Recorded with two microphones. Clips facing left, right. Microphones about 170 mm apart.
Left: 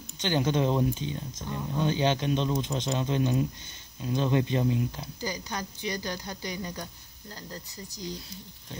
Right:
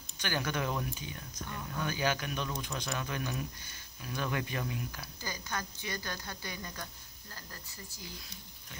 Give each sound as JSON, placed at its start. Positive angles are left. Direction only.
{"t": 0.2, "sound": "speech", "side_deg": 20}